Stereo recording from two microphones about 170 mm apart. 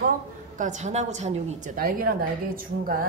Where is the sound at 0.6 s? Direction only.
45° right (ahead or behind).